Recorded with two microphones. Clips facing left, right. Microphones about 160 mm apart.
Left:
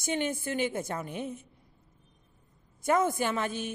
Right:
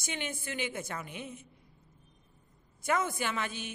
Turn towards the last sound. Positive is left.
turn(degrees=45)  # may be behind; listen again after turning